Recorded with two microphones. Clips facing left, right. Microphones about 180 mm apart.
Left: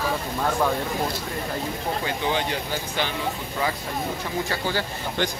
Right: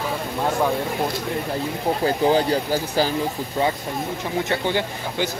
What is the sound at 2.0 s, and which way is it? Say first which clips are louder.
Speech: right 9 dB; 35° right (ahead or behind).